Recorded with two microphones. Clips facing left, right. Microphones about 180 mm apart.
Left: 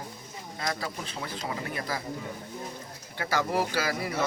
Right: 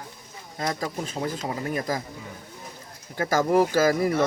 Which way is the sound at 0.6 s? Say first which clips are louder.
Right 5 dB; 40° right (ahead or behind).